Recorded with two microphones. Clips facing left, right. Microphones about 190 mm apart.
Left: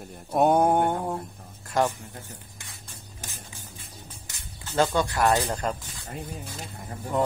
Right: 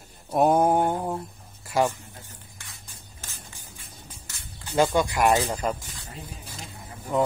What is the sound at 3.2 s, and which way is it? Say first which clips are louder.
Music: left 2 dB; 15° left (ahead or behind).